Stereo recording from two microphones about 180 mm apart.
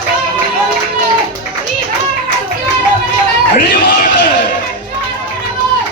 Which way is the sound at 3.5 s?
60° left (ahead or behind).